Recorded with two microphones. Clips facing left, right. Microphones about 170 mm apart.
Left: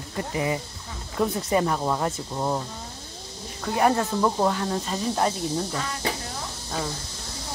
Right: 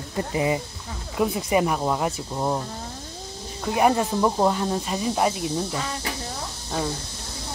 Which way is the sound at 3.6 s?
15° right (ahead or behind).